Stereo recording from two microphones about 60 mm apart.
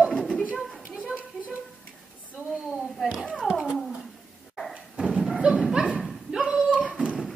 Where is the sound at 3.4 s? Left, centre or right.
Centre.